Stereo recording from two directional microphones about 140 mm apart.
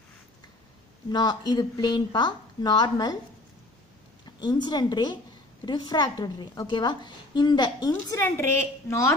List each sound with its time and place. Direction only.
1.1 s a woman's voice: 30° left (ahead or behind)
4.4 s a woman's voice: 30° left (ahead or behind)
7.9 s a woman's voice: 15° left (ahead or behind)